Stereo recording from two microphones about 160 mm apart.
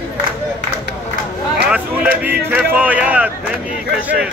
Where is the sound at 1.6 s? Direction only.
5° right (ahead or behind).